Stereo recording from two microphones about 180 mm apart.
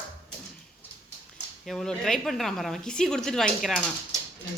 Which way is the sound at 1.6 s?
Centre (ahead or behind).